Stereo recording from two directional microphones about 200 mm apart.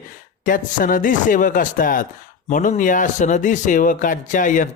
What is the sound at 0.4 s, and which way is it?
Speech, 40° left (ahead or behind).